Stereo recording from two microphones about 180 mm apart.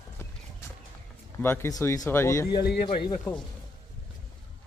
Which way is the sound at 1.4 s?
15° left (ahead or behind).